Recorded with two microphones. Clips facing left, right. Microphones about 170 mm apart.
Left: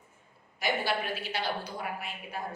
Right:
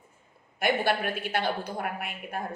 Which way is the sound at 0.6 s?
55° right (ahead or behind).